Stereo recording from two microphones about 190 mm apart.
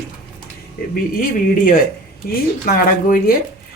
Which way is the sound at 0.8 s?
55° left (ahead or behind).